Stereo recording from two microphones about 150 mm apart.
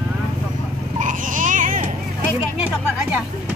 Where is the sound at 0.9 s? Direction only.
60° right (ahead or behind).